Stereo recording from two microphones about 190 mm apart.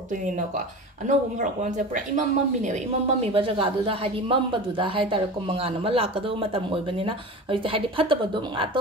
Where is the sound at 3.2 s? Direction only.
30° right (ahead or behind).